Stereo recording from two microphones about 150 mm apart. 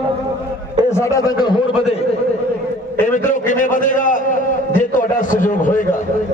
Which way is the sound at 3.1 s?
60° left (ahead or behind).